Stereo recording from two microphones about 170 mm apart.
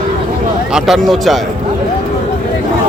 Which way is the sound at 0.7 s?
Centre (ahead or behind).